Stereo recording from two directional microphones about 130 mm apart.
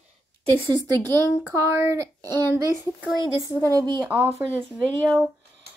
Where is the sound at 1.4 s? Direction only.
20° right (ahead or behind).